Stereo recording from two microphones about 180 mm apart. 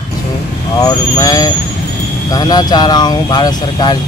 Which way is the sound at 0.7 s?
20° left (ahead or behind).